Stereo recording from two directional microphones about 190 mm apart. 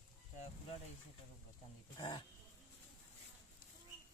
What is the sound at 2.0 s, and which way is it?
Speech, 25° left (ahead or behind).